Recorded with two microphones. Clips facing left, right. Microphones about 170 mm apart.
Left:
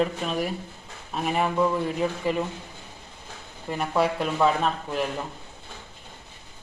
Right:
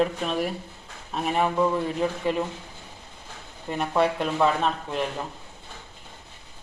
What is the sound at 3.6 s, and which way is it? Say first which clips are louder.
A woman's voice: right 1 dB; 5° left (ahead or behind).